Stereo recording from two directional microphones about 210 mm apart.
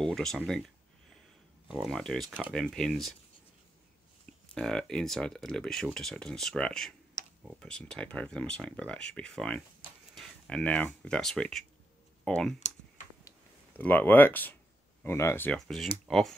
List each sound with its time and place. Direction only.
0.0 s speech: centre (ahead or behind)
1.7 s speech: centre (ahead or behind)
4.6 s speech: 5° left (ahead or behind)
12.5 s computer keyboard: 35° left (ahead or behind)
13.7 s speech: 10° left (ahead or behind)